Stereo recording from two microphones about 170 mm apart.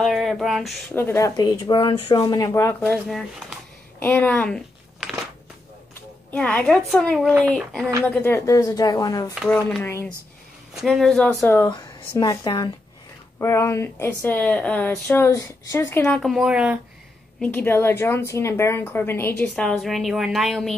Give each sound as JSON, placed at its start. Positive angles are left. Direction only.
{"t": 0.0, "sound": "a sound", "side_deg": 0}
{"t": 0.9, "sound": "speech", "side_deg": 15}
{"t": 3.1, "sound": "speech", "side_deg": 0}
{"t": 4.0, "sound": "a woman's voice", "side_deg": 10}
{"t": 6.3, "sound": "a woman's voice", "side_deg": 10}
{"t": 9.3, "sound": "speech", "side_deg": 0}
{"t": 11.7, "sound": "speech", "side_deg": 25}
{"t": 13.4, "sound": "a woman's voice", "side_deg": 15}
{"t": 16.2, "sound": "speech", "side_deg": 0}
{"t": 17.4, "sound": "a woman's voice", "side_deg": 10}